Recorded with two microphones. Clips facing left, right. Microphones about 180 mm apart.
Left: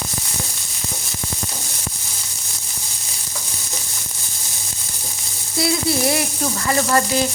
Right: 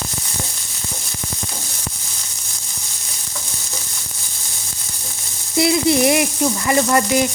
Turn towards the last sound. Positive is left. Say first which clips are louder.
# right 2 dB
turn(degrees=-15)  # may be behind; listen again after turning